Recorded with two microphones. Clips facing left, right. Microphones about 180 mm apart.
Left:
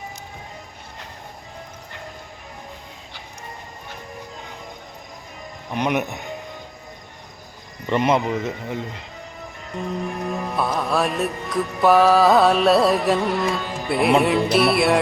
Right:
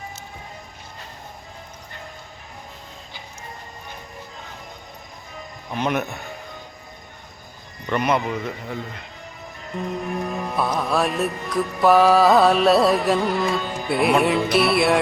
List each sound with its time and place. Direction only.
5.7 s a man's voice: 15° left (ahead or behind)
7.9 s speech: 25° left (ahead or behind)
9.7 s music: centre (ahead or behind)